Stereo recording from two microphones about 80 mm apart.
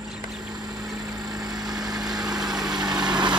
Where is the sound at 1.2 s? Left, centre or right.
Right.